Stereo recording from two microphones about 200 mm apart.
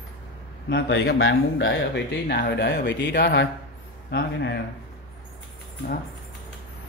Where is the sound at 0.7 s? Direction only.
60° left (ahead or behind).